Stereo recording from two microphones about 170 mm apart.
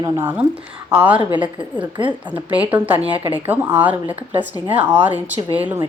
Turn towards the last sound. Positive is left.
turn(degrees=-10)  # may be behind; listen again after turning